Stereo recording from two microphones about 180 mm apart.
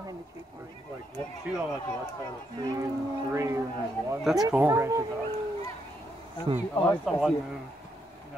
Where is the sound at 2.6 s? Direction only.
20° right (ahead or behind).